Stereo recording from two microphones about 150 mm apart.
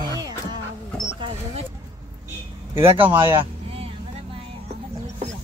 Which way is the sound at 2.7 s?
35° right (ahead or behind).